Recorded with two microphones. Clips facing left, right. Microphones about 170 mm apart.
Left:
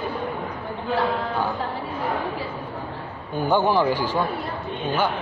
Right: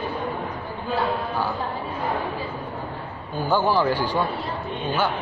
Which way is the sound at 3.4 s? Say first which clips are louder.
Left 1 dB; 20° left (ahead or behind).